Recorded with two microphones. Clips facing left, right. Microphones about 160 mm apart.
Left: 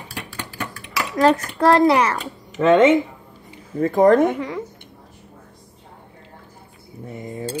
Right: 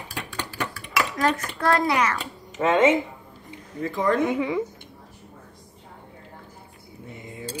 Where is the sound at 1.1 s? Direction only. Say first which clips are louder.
Left 12 dB; 35° left (ahead or behind).